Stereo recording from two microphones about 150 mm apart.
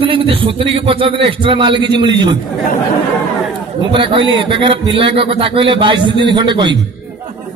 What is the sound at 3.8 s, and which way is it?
A man's voice, 35° right (ahead or behind).